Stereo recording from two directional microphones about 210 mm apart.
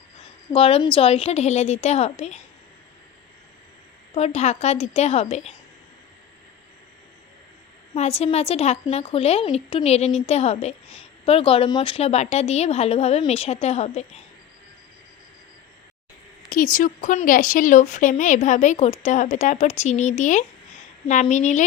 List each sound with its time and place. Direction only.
0.5 s a woman's voice: 25° left (ahead or behind)
4.1 s a woman's voice: 30° left (ahead or behind)
7.9 s a woman's voice: 30° left (ahead or behind)
16.7 s a woman's voice: 40° left (ahead or behind)